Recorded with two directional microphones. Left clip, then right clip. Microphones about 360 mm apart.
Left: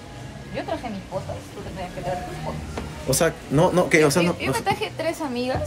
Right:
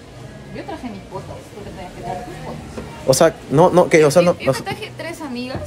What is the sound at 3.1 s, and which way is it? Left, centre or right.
Speech, centre.